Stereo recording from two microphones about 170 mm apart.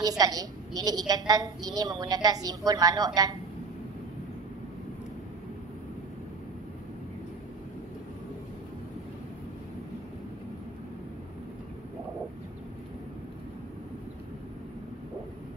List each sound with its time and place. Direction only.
0.2 s a woman's voice: 20° right (ahead or behind)